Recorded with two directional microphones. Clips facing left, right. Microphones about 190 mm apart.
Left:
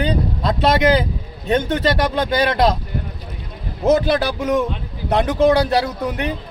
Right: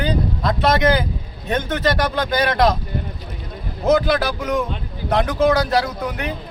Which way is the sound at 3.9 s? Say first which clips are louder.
Right 1 dB; 30° left (ahead or behind).